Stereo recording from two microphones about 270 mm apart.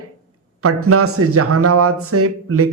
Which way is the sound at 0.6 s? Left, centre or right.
Right.